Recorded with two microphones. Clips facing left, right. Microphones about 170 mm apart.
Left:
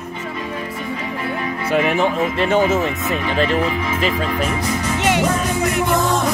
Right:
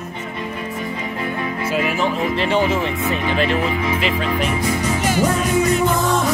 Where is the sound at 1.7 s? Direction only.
50° left (ahead or behind).